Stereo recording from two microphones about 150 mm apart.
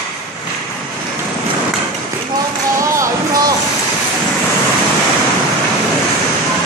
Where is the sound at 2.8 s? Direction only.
20° right (ahead or behind).